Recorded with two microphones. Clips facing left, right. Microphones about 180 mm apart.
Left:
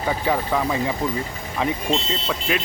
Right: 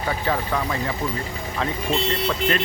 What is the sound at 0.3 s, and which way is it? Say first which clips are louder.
Speech: left 3 dB; 15° left (ahead or behind).